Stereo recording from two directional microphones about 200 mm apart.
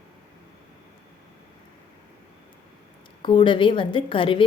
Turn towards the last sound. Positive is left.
turn(degrees=25)  # may be behind; listen again after turning